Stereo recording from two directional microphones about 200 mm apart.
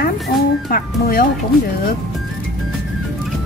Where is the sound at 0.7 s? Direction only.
45° left (ahead or behind).